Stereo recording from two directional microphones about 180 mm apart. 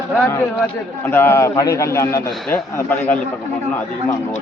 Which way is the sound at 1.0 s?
10° left (ahead or behind).